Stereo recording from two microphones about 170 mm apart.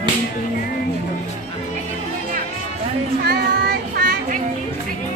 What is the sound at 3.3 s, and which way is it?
Child singing, 70° right (ahead or behind).